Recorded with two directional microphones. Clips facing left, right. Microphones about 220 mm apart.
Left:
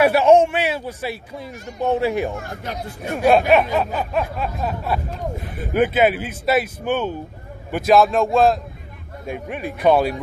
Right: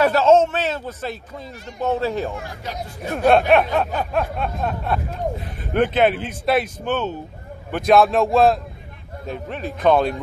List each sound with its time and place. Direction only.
0.0 s a man's voice: 15° left (ahead or behind)
2.3 s speech: 50° left (ahead or behind)
3.2 s a sound: 5° left (ahead or behind)
5.7 s a man's voice: 5° left (ahead or behind)
7.7 s a sound: centre (ahead or behind)
9.2 s a man's voice: 10° left (ahead or behind)